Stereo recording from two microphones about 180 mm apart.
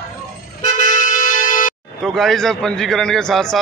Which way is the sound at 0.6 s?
45° left (ahead or behind).